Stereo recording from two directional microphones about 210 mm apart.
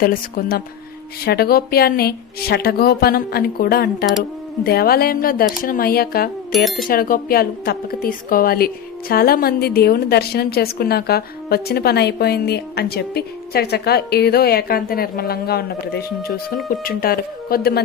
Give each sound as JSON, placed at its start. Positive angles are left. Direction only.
{"t": 0.0, "sound": "a woman's voice", "side_deg": 45}
{"t": 6.5, "sound": "speech", "side_deg": 0}
{"t": 6.8, "sound": "a woman's voice", "side_deg": 40}